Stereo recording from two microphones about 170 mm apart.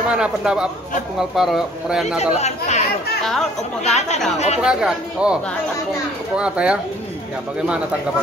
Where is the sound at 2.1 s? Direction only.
40° left (ahead or behind).